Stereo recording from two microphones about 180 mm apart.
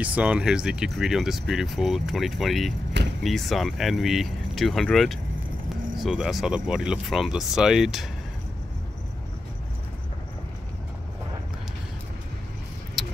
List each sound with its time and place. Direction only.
0.0 s speech: 5° right (ahead or behind)
2.9 s vehicle: 75° right (ahead or behind)
3.3 s speech: centre (ahead or behind)
13.0 s tick-tock: centre (ahead or behind)